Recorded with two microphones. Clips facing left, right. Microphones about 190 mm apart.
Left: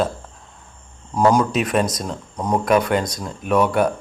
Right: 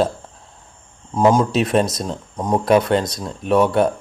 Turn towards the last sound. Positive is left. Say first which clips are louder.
# right 2 dB
turn(degrees=-25)  # may be behind; listen again after turning